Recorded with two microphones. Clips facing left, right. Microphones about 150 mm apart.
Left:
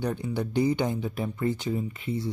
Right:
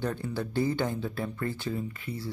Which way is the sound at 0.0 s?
15° left (ahead or behind).